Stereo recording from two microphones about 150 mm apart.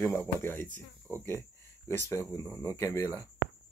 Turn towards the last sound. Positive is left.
turn(degrees=20)  # may be behind; listen again after turning